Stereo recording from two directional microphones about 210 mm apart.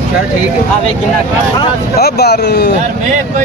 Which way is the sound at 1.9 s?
50° left (ahead or behind).